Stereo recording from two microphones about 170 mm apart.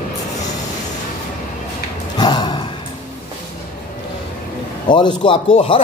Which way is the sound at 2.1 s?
25° left (ahead or behind).